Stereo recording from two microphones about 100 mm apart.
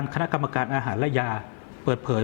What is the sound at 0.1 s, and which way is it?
A man's voice, 20° left (ahead or behind).